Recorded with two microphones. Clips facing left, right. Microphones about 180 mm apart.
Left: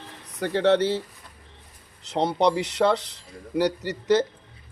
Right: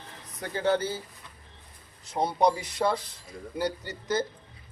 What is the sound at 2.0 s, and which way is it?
Speech, 80° left.